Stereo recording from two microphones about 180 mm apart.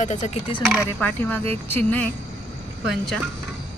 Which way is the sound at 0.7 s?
5° left (ahead or behind).